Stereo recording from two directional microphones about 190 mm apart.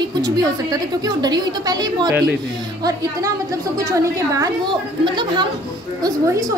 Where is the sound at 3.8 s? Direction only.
15° right (ahead or behind).